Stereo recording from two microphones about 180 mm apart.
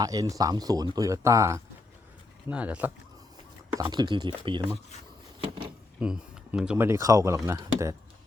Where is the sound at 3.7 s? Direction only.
20° right (ahead or behind).